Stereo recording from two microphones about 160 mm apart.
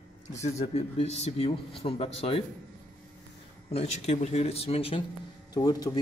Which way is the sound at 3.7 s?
40° left (ahead or behind).